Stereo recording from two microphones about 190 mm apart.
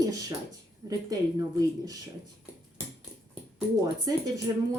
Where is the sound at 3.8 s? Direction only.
20° right (ahead or behind).